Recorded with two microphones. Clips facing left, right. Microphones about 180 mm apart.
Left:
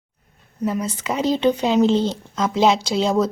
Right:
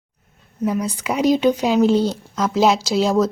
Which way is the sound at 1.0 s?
10° right (ahead or behind).